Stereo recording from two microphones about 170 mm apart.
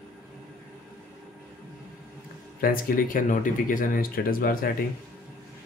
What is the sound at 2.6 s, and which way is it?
Speech, 55° left (ahead or behind).